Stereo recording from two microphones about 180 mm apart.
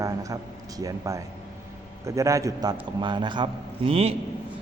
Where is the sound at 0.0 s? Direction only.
20° right (ahead or behind).